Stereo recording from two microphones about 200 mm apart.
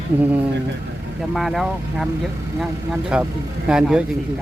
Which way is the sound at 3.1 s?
5° right (ahead or behind).